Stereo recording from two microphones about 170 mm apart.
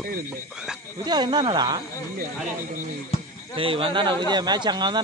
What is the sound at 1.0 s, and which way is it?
Speech, 25° right (ahead or behind).